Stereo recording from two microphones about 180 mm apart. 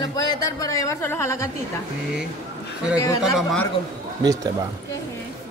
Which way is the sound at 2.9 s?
20° left (ahead or behind).